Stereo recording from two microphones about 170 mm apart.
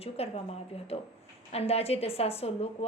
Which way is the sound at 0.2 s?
35° left (ahead or behind).